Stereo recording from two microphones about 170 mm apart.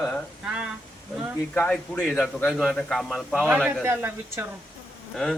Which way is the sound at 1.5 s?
10° left (ahead or behind).